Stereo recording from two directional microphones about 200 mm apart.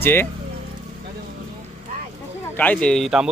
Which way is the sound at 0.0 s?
10° left (ahead or behind).